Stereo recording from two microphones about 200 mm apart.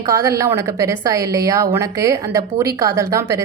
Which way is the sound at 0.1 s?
15° right (ahead or behind).